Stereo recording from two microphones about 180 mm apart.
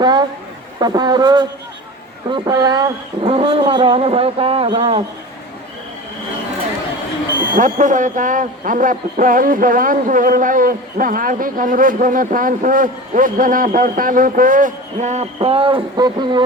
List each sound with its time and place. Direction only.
0.0 s a sound: 25° right (ahead or behind)
0.8 s speech: 25° right (ahead or behind)
7.5 s a man's voice: 45° right (ahead or behind); by 16.4 s 25° right (ahead or behind)